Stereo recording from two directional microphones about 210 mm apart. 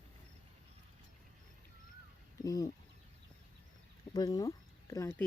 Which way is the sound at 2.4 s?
15° left (ahead or behind).